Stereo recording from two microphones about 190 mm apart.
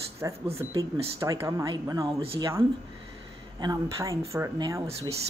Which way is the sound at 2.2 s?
30° right (ahead or behind).